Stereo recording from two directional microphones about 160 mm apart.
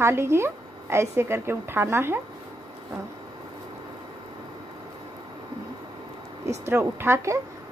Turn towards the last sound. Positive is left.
turn(degrees=-15)  # may be behind; listen again after turning